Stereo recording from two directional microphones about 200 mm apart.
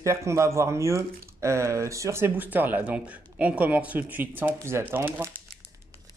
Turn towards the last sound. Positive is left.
turn(degrees=-10)  # may be behind; listen again after turning